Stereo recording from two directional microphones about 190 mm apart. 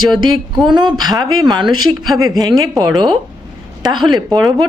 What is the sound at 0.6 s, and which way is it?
Speech, 25° right (ahead or behind).